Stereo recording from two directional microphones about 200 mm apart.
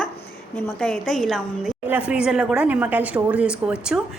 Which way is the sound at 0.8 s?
5° left (ahead or behind).